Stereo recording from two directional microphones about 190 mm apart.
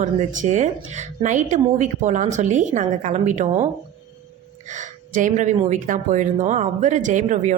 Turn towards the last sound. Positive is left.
turn(degrees=-40)  # may be behind; listen again after turning